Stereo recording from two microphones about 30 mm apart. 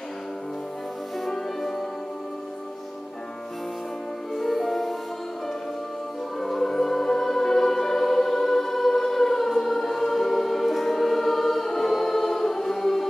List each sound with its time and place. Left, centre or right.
1.3 s music: centre
4.4 s music: centre
6.4 s music: centre
8.7 s choir: centre